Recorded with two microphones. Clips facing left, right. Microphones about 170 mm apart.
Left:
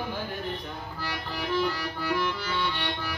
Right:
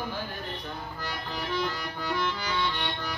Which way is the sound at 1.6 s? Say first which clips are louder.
Left 3 dB; 5° left (ahead or behind).